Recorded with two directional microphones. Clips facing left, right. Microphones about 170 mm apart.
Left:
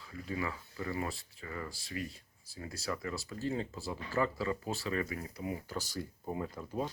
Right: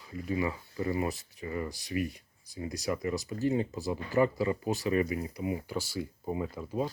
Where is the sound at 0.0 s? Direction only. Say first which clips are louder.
Right 6 dB; 20° right (ahead or behind).